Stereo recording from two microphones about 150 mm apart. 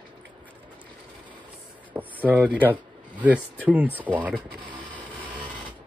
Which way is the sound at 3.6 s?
10° right (ahead or behind).